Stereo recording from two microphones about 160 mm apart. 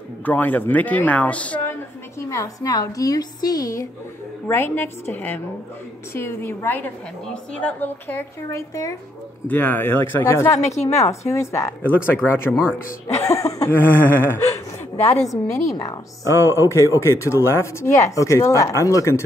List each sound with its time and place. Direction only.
0.2 s speech: 10° left (ahead or behind)
10.6 s a woman's voice: 45° left (ahead or behind)
11.1 s a woman's voice: 20° left (ahead or behind)